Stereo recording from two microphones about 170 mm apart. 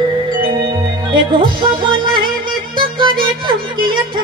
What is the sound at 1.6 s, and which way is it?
Music, 30° right (ahead or behind).